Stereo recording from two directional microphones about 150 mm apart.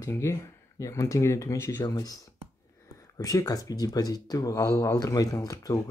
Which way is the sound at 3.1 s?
25° left (ahead or behind).